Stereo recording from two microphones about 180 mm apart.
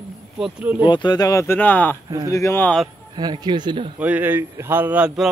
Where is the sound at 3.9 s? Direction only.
10° right (ahead or behind).